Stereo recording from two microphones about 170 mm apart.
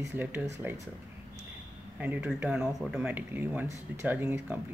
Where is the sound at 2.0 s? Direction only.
10° right (ahead or behind).